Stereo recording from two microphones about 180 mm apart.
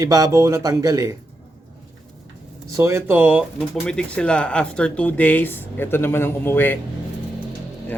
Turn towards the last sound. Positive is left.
turn(degrees=10)  # may be behind; listen again after turning